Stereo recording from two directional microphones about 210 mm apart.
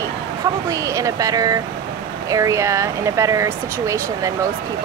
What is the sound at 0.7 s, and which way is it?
Speech, 15° right (ahead or behind).